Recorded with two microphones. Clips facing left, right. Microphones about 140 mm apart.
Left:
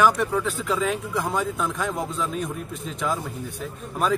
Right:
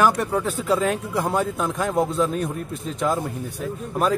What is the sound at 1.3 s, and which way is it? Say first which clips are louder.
Speech: right 3 dB; centre (ahead or behind).